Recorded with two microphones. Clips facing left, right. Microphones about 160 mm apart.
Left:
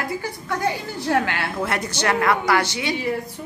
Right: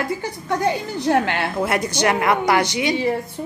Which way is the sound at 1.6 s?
15° right (ahead or behind).